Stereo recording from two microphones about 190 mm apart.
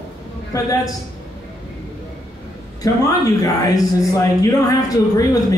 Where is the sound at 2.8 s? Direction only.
20° left (ahead or behind).